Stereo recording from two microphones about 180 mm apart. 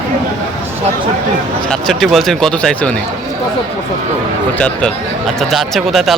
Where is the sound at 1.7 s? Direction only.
Centre (ahead or behind).